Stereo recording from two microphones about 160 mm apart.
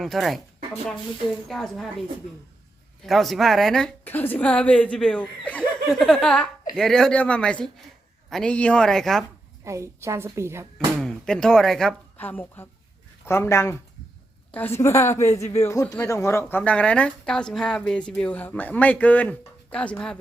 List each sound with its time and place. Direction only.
0.0 s speech: centre (ahead or behind)
1.5 s a woman's voice: centre (ahead or behind)
9.6 s a woman's voice: 20° right (ahead or behind)
11.0 s a woman's voice: 5° left (ahead or behind)